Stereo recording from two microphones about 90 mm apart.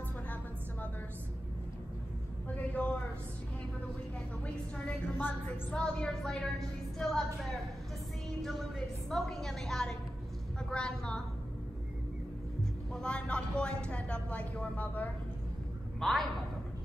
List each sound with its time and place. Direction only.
2.5 s a sound: 15° left (ahead or behind)
5.1 s a woman's voice: 15° left (ahead or behind)
12.9 s speech: 10° left (ahead or behind)
16.0 s a woman's voice: centre (ahead or behind)